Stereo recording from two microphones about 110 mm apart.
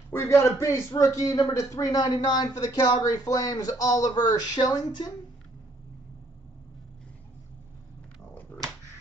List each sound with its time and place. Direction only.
0.1 s a man's voice: 25° left (ahead or behind)